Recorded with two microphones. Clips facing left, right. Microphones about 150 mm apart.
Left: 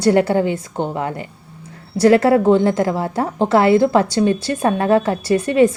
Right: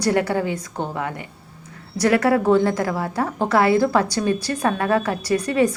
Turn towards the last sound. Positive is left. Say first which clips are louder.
# left 5 dB
turn(degrees=25)  # may be behind; listen again after turning